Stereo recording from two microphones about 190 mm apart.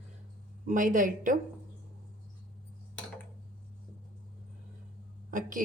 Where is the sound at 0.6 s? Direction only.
45° right (ahead or behind).